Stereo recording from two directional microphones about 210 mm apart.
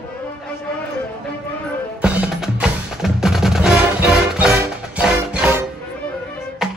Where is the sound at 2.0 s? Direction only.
5° right (ahead or behind).